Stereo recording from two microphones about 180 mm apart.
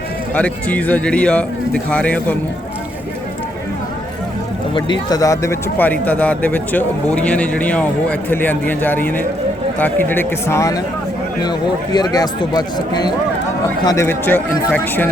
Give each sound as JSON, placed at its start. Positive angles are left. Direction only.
{"t": 0.3, "sound": "a man's voice", "side_deg": 10}
{"t": 4.7, "sound": "a man's voice", "side_deg": 25}
{"t": 11.9, "sound": "a man's voice", "side_deg": 20}